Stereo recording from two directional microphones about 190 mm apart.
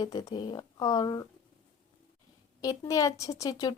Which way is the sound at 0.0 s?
20° left (ahead or behind).